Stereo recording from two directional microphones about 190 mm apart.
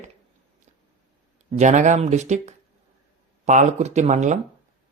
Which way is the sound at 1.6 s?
40° right (ahead or behind).